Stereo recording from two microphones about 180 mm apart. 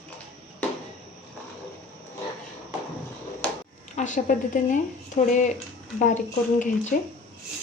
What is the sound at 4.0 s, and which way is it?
A woman's voice, 45° left (ahead or behind).